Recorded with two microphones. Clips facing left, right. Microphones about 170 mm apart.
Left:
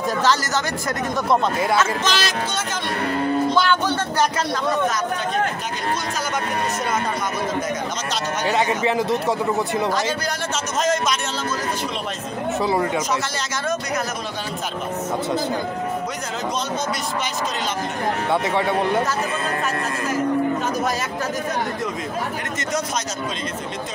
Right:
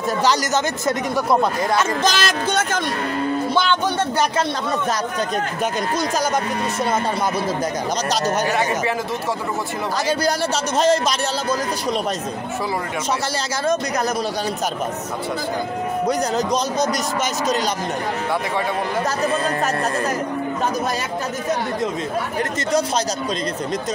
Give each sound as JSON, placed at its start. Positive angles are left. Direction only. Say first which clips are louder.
{"t": 1.1, "sound": "speech", "louder": "even", "side_deg": -5}
{"t": 2.0, "sound": "speech", "louder": "right 3 dB", "side_deg": -50}
{"t": 8.5, "sound": "speech", "louder": "left 1 dB", "side_deg": 20}
{"t": 10.8, "sound": "a man's voice", "louder": "right 3 dB", "side_deg": -30}